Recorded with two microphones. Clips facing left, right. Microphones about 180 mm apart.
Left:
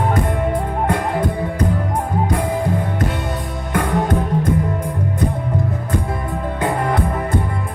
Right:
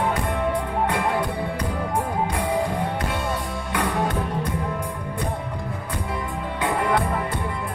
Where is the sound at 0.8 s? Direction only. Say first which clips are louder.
Left 6 dB; 45° left (ahead or behind).